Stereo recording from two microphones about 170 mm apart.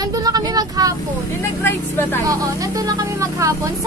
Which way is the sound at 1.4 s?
15° left (ahead or behind).